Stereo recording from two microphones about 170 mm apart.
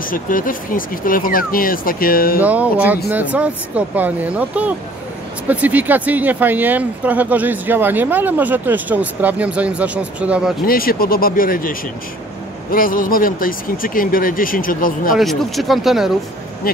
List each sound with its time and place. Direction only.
0.0 s speech: 55° left (ahead or behind)
2.4 s speech: 10° right (ahead or behind)
10.7 s speech: 60° left (ahead or behind)
12.7 s speech: 55° left (ahead or behind)
15.1 s speech: centre (ahead or behind)
16.6 s speech: 60° left (ahead or behind)